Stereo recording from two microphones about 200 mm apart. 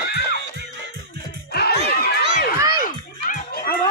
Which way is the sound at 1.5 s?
50° left (ahead or behind).